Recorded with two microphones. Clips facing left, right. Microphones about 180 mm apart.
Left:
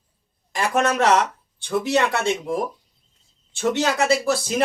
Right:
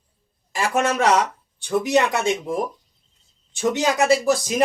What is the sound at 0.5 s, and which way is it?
Speech, 10° right (ahead or behind).